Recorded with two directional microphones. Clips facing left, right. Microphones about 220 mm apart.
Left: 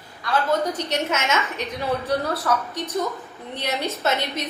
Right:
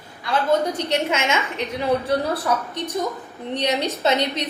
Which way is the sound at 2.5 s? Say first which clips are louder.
Left 1 dB; 15° right (ahead or behind).